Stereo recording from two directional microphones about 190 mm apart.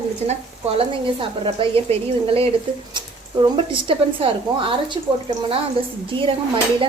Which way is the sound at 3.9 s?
30° right (ahead or behind).